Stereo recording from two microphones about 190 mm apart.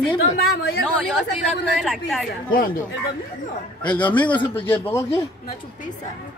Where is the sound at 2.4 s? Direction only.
50° left (ahead or behind).